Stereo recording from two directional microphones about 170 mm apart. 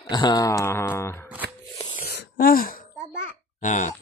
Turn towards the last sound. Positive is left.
turn(degrees=45)  # may be behind; listen again after turning